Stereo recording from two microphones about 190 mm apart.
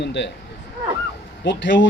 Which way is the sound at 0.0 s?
70° left (ahead or behind).